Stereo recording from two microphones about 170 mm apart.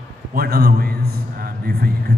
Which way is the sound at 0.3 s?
60° right (ahead or behind).